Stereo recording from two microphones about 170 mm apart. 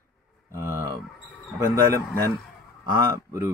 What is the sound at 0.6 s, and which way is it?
Speech, 55° left (ahead or behind).